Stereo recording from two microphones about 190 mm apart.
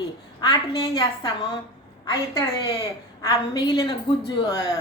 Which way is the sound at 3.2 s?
20° left (ahead or behind).